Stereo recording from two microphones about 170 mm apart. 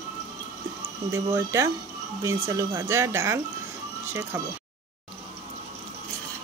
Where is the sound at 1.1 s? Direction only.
15° right (ahead or behind).